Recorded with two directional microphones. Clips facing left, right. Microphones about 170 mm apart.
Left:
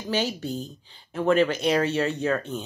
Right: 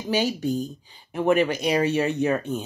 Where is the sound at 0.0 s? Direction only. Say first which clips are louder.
Right 3 dB; 15° right (ahead or behind).